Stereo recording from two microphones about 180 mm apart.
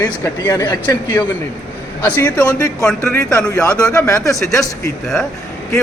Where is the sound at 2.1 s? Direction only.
10° left (ahead or behind).